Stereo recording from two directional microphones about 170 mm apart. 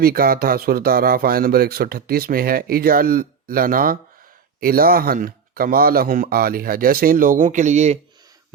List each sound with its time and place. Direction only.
0.0 s speech: 60° right (ahead or behind); by 7.9 s 45° right (ahead or behind)